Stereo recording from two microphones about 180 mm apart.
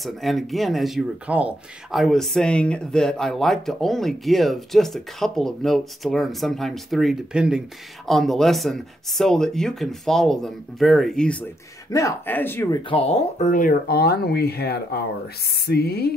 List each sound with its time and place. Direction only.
0.0 s speech: centre (ahead or behind)
11.9 s speech: 15° left (ahead or behind)
12.8 s speech: 35° left (ahead or behind); by 16.1 s 60° left (ahead or behind)